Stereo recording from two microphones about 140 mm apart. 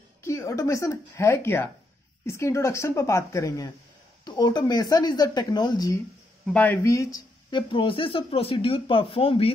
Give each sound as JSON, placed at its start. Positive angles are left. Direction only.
{"t": 0.2, "sound": "speech", "side_deg": 20}
{"t": 6.4, "sound": "speech", "side_deg": 10}